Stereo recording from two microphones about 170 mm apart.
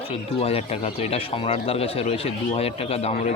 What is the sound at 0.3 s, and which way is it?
Speech, 35° left (ahead or behind).